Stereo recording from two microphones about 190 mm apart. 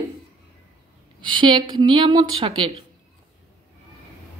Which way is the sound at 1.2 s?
25° right (ahead or behind).